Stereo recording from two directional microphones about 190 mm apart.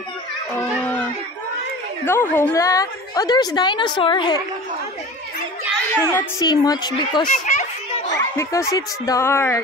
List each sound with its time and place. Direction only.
2.0 s a woman's voice: 10° left (ahead or behind)
5.9 s a woman's voice: 10° left (ahead or behind)
7.2 s speech: 40° left (ahead or behind)
8.4 s speech: 15° left (ahead or behind)